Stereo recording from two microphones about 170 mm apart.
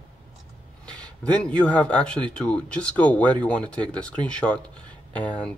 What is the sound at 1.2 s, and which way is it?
Speech, 5° left (ahead or behind).